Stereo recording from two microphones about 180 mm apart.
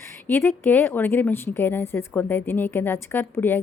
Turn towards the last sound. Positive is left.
turn(degrees=10)  # may be behind; listen again after turning